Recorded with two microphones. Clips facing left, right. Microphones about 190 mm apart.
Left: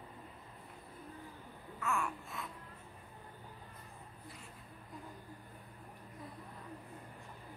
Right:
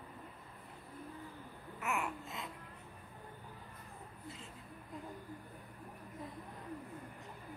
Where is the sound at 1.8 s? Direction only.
20° right (ahead or behind).